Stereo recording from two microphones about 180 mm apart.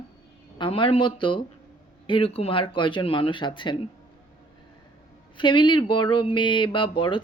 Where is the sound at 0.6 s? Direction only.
30° left (ahead or behind).